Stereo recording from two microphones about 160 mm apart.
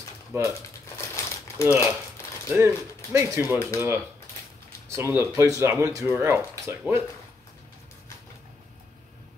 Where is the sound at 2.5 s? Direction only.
20° right (ahead or behind).